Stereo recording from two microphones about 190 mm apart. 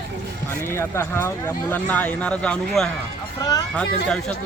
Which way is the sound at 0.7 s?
15° left (ahead or behind).